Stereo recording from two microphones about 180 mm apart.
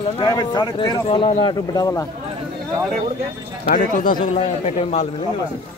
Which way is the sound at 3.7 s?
50° left (ahead or behind).